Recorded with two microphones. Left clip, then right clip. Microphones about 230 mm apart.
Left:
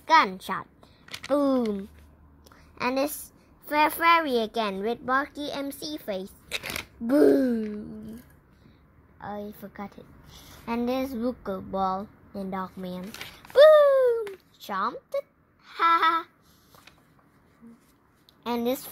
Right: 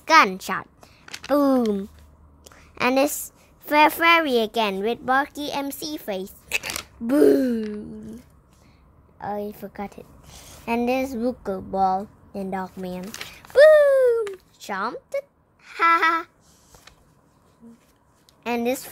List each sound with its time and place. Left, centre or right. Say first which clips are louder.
0.0 s a child's voice: right 4 dB; right
9.2 s a woman's voice: right 7 dB; right
12.8 s a sound: right 4 dB; centre
18.4 s a woman's voice: right 4 dB; centre